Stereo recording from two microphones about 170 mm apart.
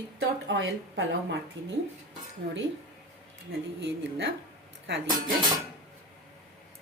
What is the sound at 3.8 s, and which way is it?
Speech, 90° right.